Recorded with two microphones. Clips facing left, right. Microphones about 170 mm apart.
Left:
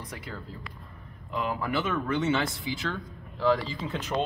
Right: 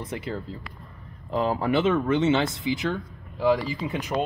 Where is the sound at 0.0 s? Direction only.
25° right (ahead or behind).